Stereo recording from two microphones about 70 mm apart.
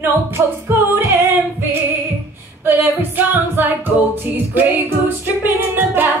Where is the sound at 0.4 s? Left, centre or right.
Right.